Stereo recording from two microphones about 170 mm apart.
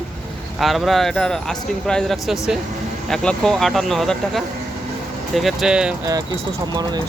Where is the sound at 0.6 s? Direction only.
Centre (ahead or behind).